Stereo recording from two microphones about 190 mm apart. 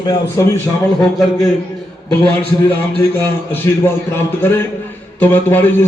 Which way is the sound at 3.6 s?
10° left (ahead or behind).